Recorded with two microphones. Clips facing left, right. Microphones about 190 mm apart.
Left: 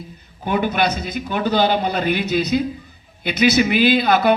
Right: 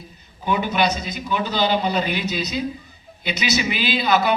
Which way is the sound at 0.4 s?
55° left (ahead or behind).